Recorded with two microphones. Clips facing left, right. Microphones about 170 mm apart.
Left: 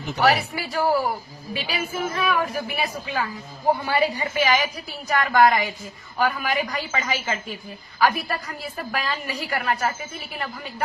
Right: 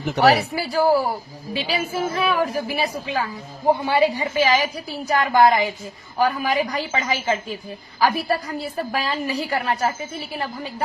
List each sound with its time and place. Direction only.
0.3 s a woman's voice: 30° right (ahead or behind)